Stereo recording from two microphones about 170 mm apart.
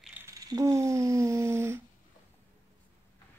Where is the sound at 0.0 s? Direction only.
10° right (ahead or behind).